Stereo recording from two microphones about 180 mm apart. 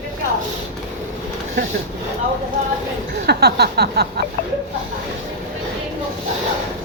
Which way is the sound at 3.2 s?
65° right (ahead or behind).